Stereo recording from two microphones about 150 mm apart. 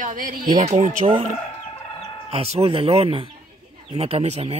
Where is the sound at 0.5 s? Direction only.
45° right (ahead or behind).